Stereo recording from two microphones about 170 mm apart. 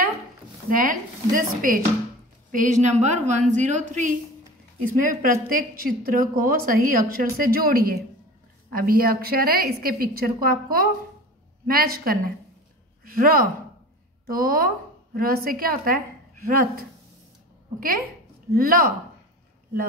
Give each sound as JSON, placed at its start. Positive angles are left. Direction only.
{"t": 0.7, "sound": "a woman's voice", "side_deg": -55}
{"t": 5.0, "sound": "a woman's voice", "side_deg": -55}